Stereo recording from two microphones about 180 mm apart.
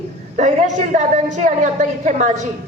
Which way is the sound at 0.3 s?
40° right (ahead or behind).